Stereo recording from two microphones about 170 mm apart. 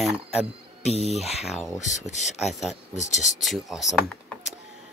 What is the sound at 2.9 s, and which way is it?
Speech, 45° left (ahead or behind).